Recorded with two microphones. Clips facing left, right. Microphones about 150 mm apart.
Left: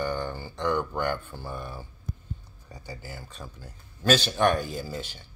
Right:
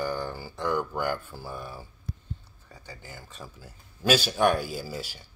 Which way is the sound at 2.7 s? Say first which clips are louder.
Left 4 dB; 10° left (ahead or behind).